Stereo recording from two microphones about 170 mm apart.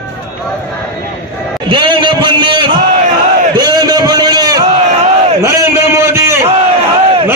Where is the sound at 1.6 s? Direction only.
30° right (ahead or behind).